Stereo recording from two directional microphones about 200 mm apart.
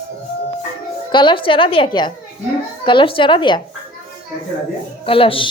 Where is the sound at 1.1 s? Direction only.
25° left (ahead or behind).